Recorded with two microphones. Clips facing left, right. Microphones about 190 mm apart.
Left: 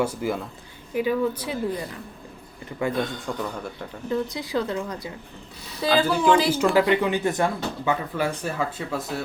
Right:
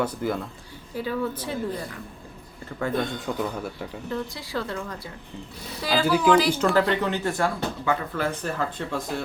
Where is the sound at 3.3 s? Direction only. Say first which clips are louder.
Right 2 dB; 5° right (ahead or behind).